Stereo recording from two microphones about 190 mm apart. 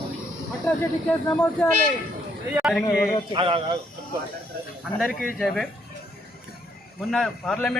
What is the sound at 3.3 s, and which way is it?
Speech, 25° right (ahead or behind).